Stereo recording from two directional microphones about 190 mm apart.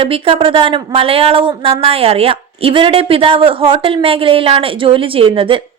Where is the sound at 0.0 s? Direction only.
30° right (ahead or behind).